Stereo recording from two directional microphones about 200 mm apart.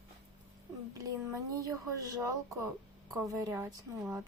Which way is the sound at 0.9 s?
15° right (ahead or behind).